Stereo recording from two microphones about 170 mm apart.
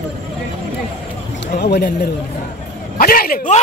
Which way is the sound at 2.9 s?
55° left (ahead or behind).